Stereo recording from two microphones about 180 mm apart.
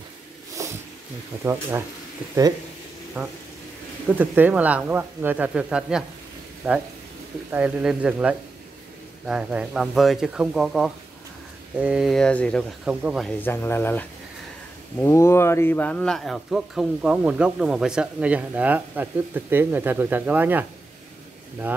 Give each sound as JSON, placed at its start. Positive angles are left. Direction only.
{"t": 0.6, "sound": "cat", "side_deg": -15}
{"t": 1.4, "sound": "speech", "side_deg": -15}
{"t": 3.2, "sound": "a man's voice", "side_deg": -5}
{"t": 12.8, "sound": "a man's voice", "side_deg": -5}
{"t": 13.4, "sound": "a man's voice", "side_deg": 10}